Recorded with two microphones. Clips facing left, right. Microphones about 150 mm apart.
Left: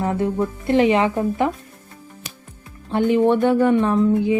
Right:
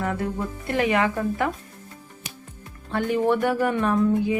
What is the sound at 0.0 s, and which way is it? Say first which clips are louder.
Speech: left 6 dB; 25° left (ahead or behind).